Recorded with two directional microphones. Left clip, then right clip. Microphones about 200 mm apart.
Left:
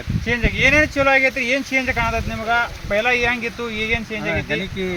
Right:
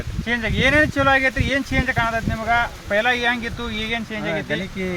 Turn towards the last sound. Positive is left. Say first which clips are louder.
# left 2 dB
turn(degrees=-10)  # may be behind; listen again after turning